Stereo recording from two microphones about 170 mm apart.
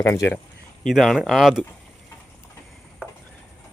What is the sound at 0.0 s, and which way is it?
Speech, 15° left (ahead or behind).